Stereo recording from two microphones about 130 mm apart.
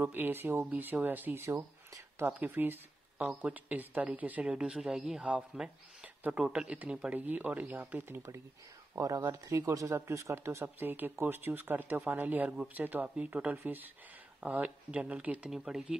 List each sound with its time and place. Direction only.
0.0 s speech: 15° right (ahead or behind)